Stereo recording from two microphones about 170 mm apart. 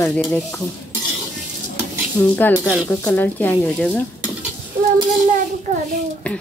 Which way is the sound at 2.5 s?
5° right (ahead or behind).